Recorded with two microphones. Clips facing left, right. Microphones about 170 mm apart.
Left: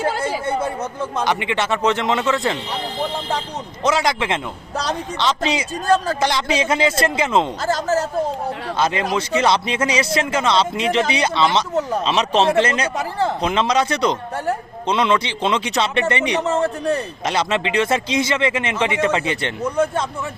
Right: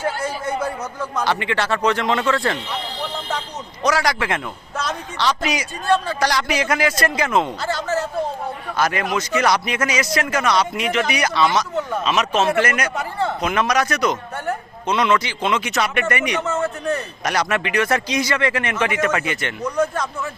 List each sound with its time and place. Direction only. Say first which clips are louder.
1.1 s speech: even; 20° left (ahead or behind)
3.8 s speech: left 1 dB; 25° left (ahead or behind)
7.6 s speech: left 3 dB; 40° left (ahead or behind)
8.8 s speech: left 1 dB; 25° left (ahead or behind)
11.7 s speech: left 2 dB; 40° left (ahead or behind)